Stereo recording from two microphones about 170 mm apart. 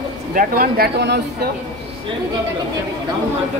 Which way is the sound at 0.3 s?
55° right (ahead or behind).